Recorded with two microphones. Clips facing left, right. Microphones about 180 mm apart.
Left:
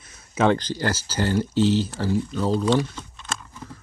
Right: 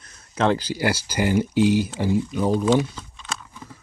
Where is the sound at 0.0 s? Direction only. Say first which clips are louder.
Left 1 dB; 5° left (ahead or behind).